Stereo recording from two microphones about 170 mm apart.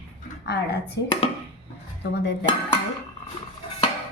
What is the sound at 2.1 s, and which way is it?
Speech, 90° left.